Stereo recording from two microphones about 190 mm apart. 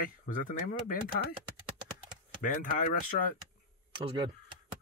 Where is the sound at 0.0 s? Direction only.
45° left (ahead or behind).